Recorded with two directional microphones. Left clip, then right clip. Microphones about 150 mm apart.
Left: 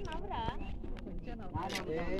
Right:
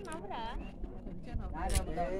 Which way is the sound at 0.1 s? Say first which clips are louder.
Left 2 dB; 55° right (ahead or behind).